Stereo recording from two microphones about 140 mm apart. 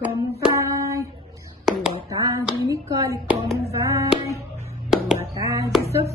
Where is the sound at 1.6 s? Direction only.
Centre (ahead or behind).